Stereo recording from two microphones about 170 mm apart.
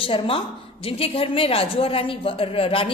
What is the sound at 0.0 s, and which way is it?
Speech, 30° left (ahead or behind).